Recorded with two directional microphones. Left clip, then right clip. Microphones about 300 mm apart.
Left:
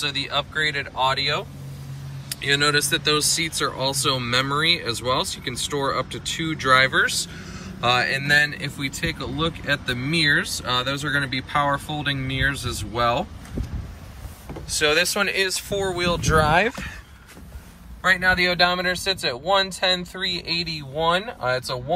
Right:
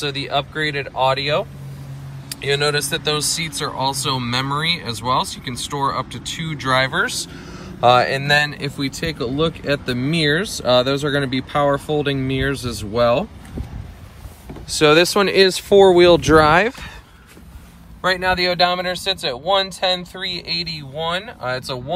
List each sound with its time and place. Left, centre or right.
0.0 s speech: centre
14.8 s speech: centre
18.0 s speech: centre